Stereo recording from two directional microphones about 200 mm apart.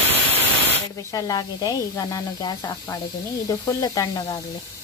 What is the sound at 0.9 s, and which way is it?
Speech, 15° left (ahead or behind).